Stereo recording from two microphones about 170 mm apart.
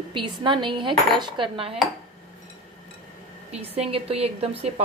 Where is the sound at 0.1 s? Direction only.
30° right (ahead or behind).